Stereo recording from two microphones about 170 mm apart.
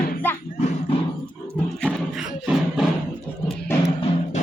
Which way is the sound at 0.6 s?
45° left (ahead or behind).